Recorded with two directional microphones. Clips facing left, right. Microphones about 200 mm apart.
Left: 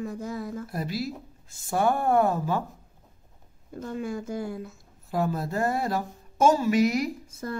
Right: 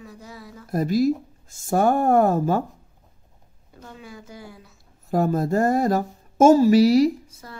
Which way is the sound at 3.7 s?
50° left (ahead or behind).